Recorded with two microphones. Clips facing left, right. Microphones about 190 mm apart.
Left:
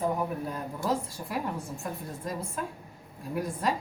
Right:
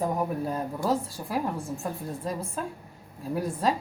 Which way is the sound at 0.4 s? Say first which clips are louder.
Right 4 dB; 35° right (ahead or behind).